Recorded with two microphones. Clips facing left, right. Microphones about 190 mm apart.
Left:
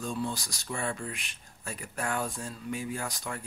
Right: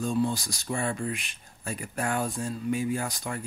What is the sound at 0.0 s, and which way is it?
Speech, 30° right (ahead or behind).